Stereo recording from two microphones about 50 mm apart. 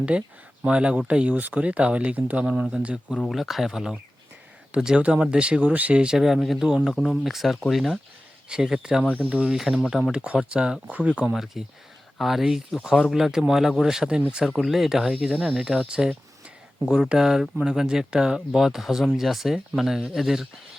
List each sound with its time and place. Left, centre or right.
0.1 s speech: right
2.4 s speech: centre
3.2 s speech: centre; by 6.0 s right
6.0 s speech: centre
6.2 s speech: centre
8.4 s speech: centre
11.3 s speech: centre